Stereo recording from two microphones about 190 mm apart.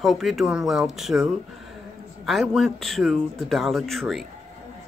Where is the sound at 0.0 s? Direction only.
Centre (ahead or behind).